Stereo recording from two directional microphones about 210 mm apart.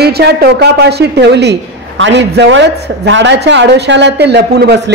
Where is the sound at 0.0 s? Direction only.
50° right (ahead or behind).